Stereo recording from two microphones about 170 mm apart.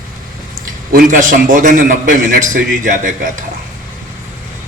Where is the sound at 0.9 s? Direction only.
50° right (ahead or behind).